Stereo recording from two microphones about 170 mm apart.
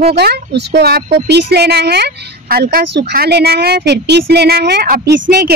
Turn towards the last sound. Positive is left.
turn(degrees=-75)  # may be behind; listen again after turning